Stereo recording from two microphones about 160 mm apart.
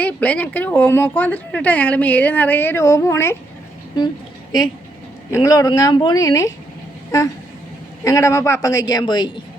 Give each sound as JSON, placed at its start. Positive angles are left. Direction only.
{"t": 0.0, "sound": "speech", "side_deg": 10}
{"t": 5.3, "sound": "a man's voice", "side_deg": 20}
{"t": 8.0, "sound": "a man's voice", "side_deg": 20}